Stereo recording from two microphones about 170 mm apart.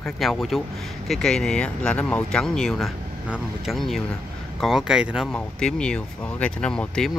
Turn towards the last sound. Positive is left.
turn(degrees=5)  # may be behind; listen again after turning